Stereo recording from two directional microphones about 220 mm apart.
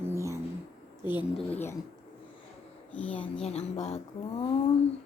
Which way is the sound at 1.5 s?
10° left (ahead or behind).